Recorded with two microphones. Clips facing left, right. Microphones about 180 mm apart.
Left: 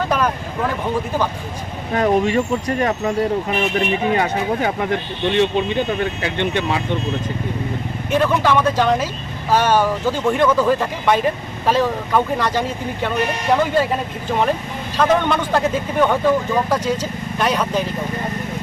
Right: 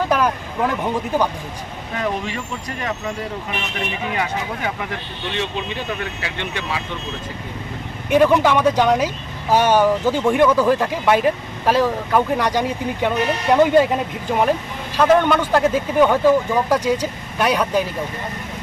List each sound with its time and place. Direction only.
0.0 s vehicle: 10° right (ahead or behind)
1.9 s speech: 45° left (ahead or behind)
8.1 s speech: 15° right (ahead or behind)
14.9 s speech: 10° right (ahead or behind)